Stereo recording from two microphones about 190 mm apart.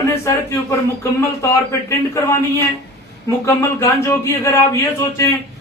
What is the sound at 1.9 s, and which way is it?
Speech, 15° left (ahead or behind).